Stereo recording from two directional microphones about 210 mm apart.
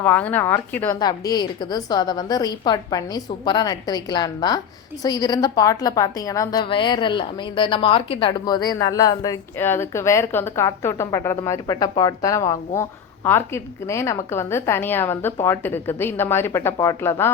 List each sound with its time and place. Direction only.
0.0 s a woman's voice: 10° left (ahead or behind)